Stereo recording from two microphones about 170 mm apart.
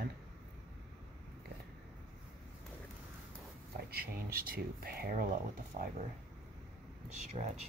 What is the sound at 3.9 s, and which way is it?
Speech, 60° right (ahead or behind).